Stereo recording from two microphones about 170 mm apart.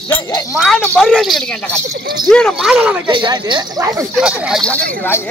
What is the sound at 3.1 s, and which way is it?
Speech, 30° right (ahead or behind).